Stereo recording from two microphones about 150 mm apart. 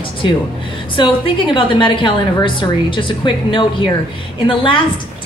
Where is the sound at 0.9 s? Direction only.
35° left (ahead or behind).